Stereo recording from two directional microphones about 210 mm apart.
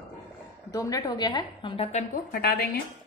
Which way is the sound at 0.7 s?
15° left (ahead or behind).